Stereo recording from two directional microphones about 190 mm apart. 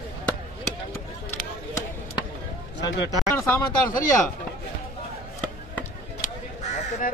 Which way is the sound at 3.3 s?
15° left (ahead or behind).